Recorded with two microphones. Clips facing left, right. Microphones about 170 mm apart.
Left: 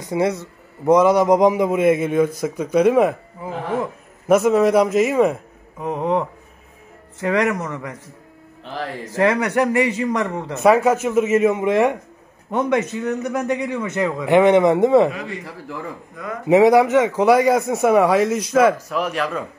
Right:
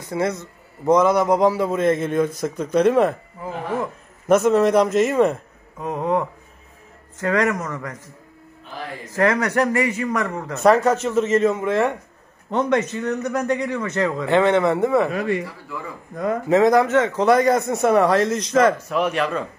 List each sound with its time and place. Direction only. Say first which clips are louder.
0.0 s a man's voice: left 3 dB; 15° left (ahead or behind)
4.3 s a man's voice: left 1 dB; 5° left (ahead or behind)
9.1 s a man's voice: left 1 dB; 15° left (ahead or behind)
15.1 s speech: right 8 dB; 60° right (ahead or behind)
16.4 s a man's voice: left 4 dB; 15° left (ahead or behind)